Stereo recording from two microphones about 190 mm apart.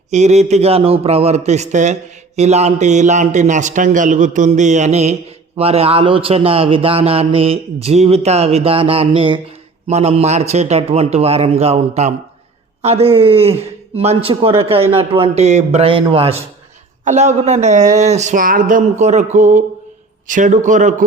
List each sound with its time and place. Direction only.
0.1 s a man's voice: 35° right (ahead or behind)